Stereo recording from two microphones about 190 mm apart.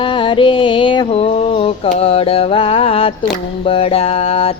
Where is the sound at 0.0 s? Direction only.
25° left (ahead or behind).